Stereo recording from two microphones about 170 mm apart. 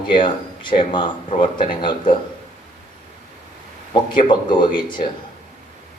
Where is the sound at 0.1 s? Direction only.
30° left (ahead or behind).